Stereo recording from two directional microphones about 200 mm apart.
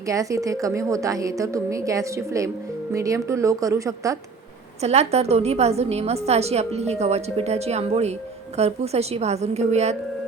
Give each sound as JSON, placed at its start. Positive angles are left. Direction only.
{"t": 0.0, "sound": "a woman's voice", "side_deg": -15}
{"t": 4.8, "sound": "a woman's voice", "side_deg": -30}